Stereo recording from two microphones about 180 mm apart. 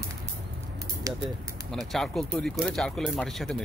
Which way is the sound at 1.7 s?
Centre (ahead or behind).